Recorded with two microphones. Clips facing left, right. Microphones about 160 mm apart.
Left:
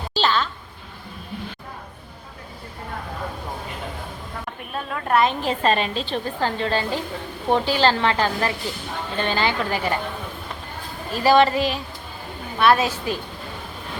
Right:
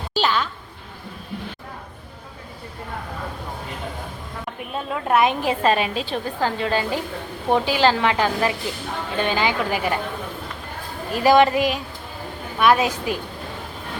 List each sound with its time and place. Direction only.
0.1 s a sound: 15° right (ahead or behind)
4.7 s a woman's voice: 15° right (ahead or behind)
11.1 s a woman's voice: 15° right (ahead or behind)